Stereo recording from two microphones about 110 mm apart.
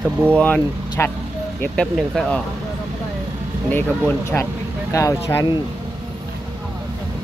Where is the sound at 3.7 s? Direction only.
15° left (ahead or behind).